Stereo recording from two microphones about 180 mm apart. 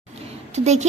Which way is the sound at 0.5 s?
40° right (ahead or behind).